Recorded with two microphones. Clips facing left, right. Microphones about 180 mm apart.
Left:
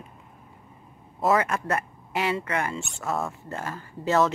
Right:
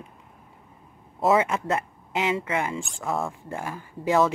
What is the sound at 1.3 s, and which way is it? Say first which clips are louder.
Speech: right 2 dB; 20° right (ahead or behind).